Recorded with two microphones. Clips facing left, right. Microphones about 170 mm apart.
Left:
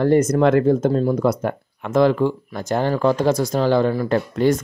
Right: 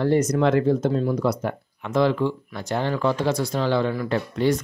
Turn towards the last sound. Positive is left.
turn(degrees=50)  # may be behind; listen again after turning